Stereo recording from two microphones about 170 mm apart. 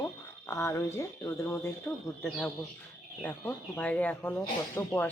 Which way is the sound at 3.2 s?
10° left (ahead or behind).